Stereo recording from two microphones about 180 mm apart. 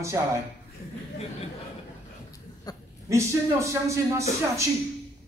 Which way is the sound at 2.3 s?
20° left (ahead or behind).